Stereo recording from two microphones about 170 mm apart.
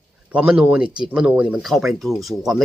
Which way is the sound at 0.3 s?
5° right (ahead or behind).